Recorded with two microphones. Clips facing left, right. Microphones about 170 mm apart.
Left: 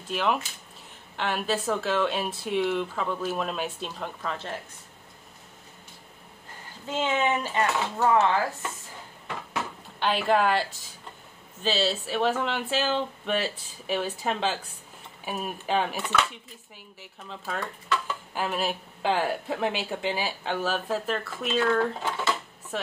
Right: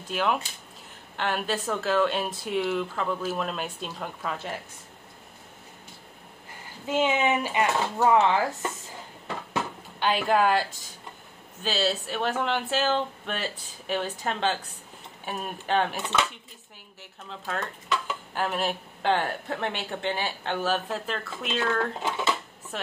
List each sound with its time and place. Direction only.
0.1 s speech: centre (ahead or behind)
6.9 s speech: 15° right (ahead or behind)
9.9 s speech: centre (ahead or behind)
17.3 s speech: 5° left (ahead or behind)
22.0 s speech: 15° right (ahead or behind)